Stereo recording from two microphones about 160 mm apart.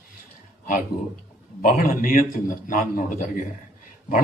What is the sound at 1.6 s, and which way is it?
Speech, 55° left (ahead or behind).